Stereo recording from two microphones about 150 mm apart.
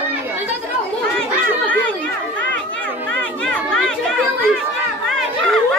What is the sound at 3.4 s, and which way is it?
Chatter, 5° left (ahead or behind).